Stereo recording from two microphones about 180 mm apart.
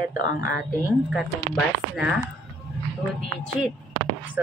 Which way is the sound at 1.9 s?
5° right (ahead or behind).